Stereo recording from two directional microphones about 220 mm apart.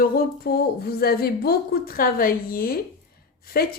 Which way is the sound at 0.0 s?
45° left (ahead or behind).